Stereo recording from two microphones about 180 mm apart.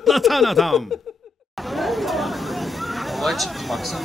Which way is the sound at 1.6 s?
Centre (ahead or behind).